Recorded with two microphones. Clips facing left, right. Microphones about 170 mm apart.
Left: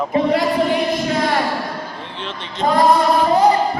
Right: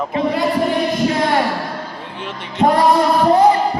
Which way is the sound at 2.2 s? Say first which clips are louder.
Right 1 dB; 15° right (ahead or behind).